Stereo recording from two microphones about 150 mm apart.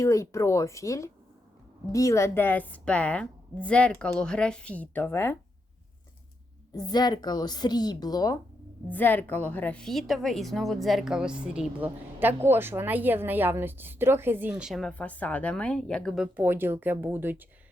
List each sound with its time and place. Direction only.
0.0 s a woman's voice: 20° left (ahead or behind)
6.7 s a woman's voice: 25° left (ahead or behind)
8.9 s a woman's voice: 10° left (ahead or behind); by 17.5 s 10° right (ahead or behind)